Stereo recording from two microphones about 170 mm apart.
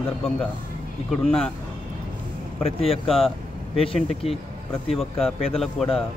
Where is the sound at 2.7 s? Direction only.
35° left (ahead or behind).